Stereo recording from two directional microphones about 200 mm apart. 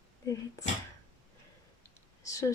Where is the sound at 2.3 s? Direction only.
15° left (ahead or behind).